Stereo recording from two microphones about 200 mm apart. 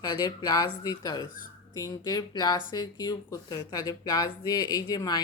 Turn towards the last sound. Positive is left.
turn(degrees=20)  # may be behind; listen again after turning